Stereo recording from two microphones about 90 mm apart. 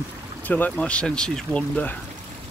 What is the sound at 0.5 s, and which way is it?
Speech, 20° left (ahead or behind).